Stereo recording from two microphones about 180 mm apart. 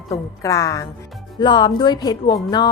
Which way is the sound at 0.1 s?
20° left (ahead or behind).